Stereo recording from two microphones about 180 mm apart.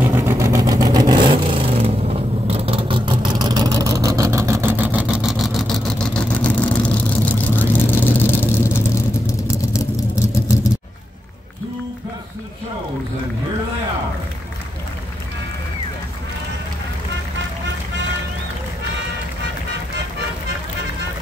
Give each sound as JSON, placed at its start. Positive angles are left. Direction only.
{"t": 0.0, "sound": "vehicle", "side_deg": -15}